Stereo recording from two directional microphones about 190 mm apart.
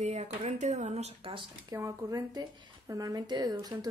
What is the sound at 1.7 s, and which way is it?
A woman's voice, 15° right (ahead or behind).